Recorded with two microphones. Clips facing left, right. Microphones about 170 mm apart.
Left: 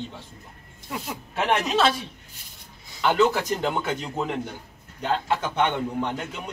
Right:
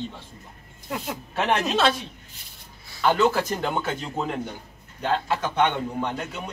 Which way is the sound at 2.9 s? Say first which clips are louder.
Even; 15° left (ahead or behind).